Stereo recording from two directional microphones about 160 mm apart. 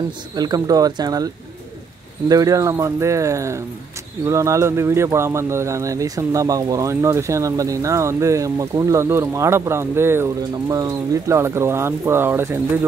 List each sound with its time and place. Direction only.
0.4 s speech: 25° right (ahead or behind)